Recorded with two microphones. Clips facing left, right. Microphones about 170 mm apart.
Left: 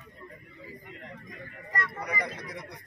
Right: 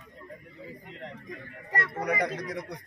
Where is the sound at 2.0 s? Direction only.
75° right (ahead or behind).